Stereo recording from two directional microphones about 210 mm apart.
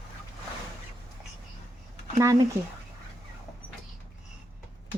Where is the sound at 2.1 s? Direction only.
15° right (ahead or behind).